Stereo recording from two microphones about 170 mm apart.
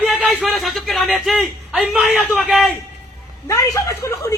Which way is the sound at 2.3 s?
5° right (ahead or behind).